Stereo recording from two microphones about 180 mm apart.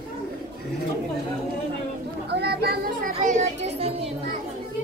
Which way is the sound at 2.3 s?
65° right (ahead or behind).